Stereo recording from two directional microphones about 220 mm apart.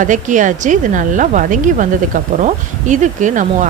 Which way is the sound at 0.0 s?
35° right (ahead or behind).